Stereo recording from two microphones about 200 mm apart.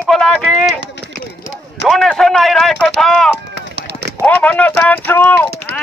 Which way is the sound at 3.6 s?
60° right (ahead or behind).